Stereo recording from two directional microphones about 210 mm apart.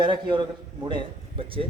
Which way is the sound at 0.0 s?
20° right (ahead or behind).